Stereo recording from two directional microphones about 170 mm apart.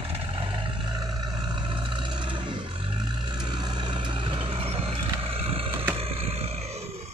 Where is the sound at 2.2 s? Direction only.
25° right (ahead or behind).